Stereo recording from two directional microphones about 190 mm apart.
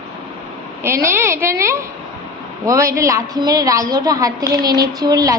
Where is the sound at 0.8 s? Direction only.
15° right (ahead or behind).